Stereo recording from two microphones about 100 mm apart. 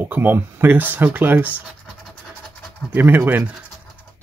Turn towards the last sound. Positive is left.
turn(degrees=-20)  # may be behind; listen again after turning